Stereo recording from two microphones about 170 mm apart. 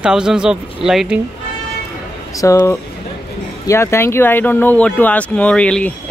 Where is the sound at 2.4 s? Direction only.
20° left (ahead or behind).